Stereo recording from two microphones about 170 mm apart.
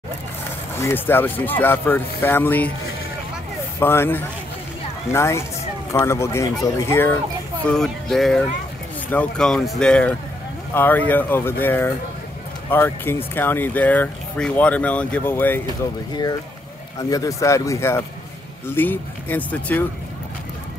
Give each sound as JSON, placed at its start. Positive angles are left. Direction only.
{"t": 0.7, "sound": "speech", "side_deg": 15}
{"t": 3.8, "sound": "speech", "side_deg": 15}
{"t": 7.6, "sound": "speech", "side_deg": 5}
{"t": 16.1, "sound": "speech", "side_deg": 25}